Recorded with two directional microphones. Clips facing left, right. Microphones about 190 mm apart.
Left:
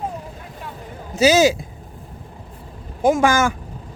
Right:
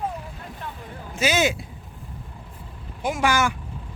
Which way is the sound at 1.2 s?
40° left (ahead or behind).